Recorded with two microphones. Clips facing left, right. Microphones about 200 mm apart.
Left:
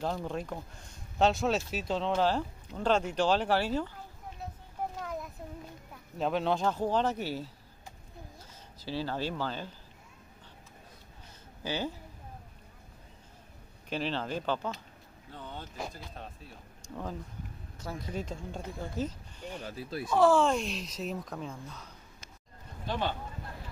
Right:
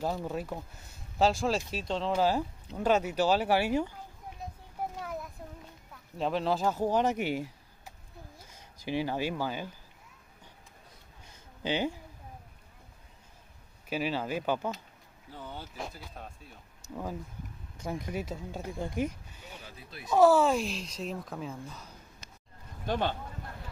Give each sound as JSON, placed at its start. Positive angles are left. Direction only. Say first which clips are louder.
{"t": 0.0, "sound": "speech", "louder": "right 1 dB", "side_deg": -5}
{"t": 4.8, "sound": "a sound", "louder": "even", "side_deg": -10}
{"t": 6.1, "sound": "speech", "louder": "even", "side_deg": 0}
{"t": 8.8, "sound": "speech", "louder": "right 3 dB", "side_deg": -15}
{"t": 11.6, "sound": "speech", "louder": "right 4 dB", "side_deg": -15}
{"t": 13.8, "sound": "speech", "louder": "right 2 dB", "side_deg": -10}